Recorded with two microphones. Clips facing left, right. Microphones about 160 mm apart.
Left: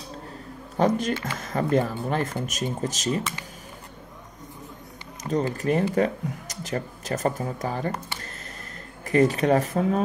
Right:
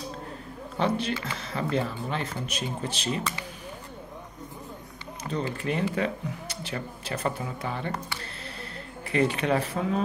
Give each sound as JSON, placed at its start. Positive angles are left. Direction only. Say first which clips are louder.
{"t": 0.7, "sound": "speech", "louder": "left 4 dB", "side_deg": 45}
{"t": 5.3, "sound": "speech", "louder": "left 6 dB", "side_deg": 40}
{"t": 9.1, "sound": "speech", "louder": "left 5 dB", "side_deg": 40}